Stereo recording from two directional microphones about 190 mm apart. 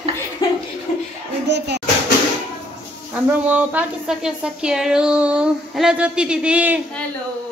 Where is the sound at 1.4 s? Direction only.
65° right (ahead or behind).